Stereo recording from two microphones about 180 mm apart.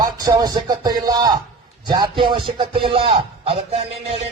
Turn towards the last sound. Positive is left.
turn(degrees=-35)  # may be behind; listen again after turning